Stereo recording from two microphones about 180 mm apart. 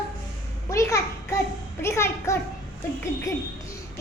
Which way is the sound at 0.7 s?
15° left (ahead or behind).